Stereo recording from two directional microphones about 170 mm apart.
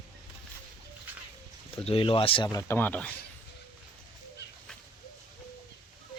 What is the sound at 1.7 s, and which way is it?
Speech, 35° left (ahead or behind).